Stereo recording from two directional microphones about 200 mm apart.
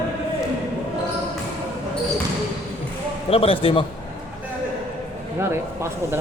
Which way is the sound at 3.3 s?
30° left (ahead or behind).